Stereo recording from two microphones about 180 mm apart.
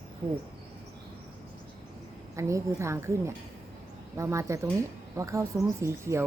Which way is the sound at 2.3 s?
15° right (ahead or behind).